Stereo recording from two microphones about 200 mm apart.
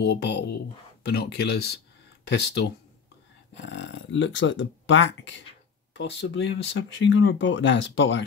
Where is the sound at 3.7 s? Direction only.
70° left (ahead or behind).